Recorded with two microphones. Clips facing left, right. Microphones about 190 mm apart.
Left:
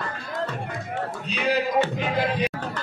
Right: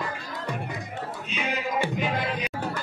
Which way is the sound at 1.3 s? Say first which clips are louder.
Left 8 dB; 35° left (ahead or behind).